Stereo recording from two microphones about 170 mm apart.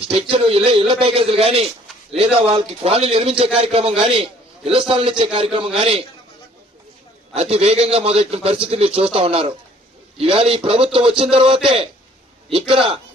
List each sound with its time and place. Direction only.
0.0 s a man's voice: 30° right (ahead or behind)
7.3 s a man's voice: 35° right (ahead or behind)